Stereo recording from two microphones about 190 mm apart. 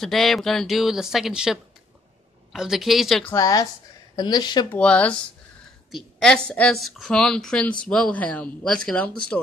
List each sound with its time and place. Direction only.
0.0 s a woman's voice: centre (ahead or behind)
3.3 s speech: 20° left (ahead or behind)
4.6 s a woman's voice: 5° left (ahead or behind)